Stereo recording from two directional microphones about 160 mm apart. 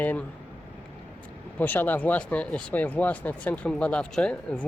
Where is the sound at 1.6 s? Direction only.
10° left (ahead or behind).